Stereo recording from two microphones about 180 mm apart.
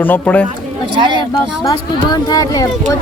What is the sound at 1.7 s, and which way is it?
Speech, 20° left (ahead or behind).